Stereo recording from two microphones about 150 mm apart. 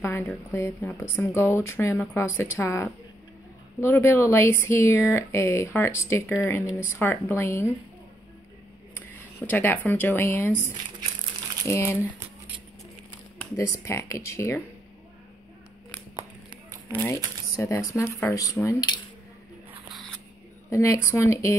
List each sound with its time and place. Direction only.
0.0 s speech: 15° left (ahead or behind)
8.9 s speech: 10° left (ahead or behind)
11.6 s speech: 15° left (ahead or behind)
13.4 s speech: 20° left (ahead or behind)
16.9 s speech: 15° left (ahead or behind)
20.7 s speech: 20° left (ahead or behind)